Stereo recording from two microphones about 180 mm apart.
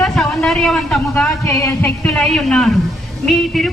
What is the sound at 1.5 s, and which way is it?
Music, 15° left (ahead or behind).